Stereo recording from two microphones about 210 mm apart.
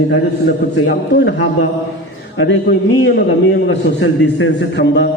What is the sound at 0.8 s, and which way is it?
A man's voice, 60° left (ahead or behind).